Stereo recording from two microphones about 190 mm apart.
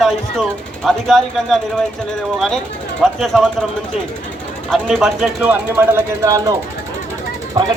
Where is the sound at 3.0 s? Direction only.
Centre (ahead or behind).